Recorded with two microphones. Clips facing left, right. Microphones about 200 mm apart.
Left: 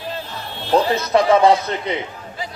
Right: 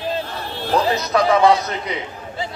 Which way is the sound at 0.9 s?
25° left (ahead or behind).